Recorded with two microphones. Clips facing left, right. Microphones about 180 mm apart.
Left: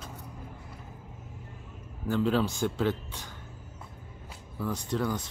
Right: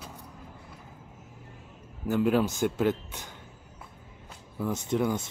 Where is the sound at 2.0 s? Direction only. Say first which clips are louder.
Right 2 dB; 10° right (ahead or behind).